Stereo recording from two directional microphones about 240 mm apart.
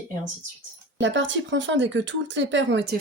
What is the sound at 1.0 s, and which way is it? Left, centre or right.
A woman's voice, right.